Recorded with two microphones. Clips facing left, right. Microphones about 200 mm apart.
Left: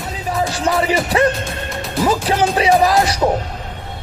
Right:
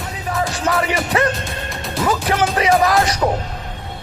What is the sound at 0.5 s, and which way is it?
Speech, 30° left (ahead or behind).